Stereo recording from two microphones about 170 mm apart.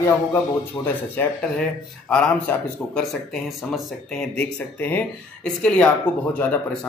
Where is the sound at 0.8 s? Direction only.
20° left (ahead or behind).